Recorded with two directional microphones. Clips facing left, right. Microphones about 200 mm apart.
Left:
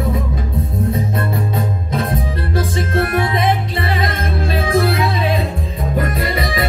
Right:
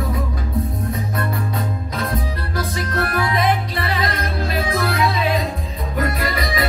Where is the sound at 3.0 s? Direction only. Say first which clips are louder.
Left 3 dB; 25° left (ahead or behind).